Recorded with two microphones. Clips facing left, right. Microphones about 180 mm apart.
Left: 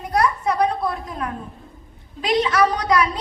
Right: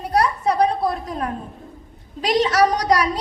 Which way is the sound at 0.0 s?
35° right (ahead or behind).